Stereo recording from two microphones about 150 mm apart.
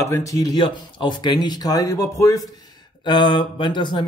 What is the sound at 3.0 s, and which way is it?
Mantra, 30° left (ahead or behind).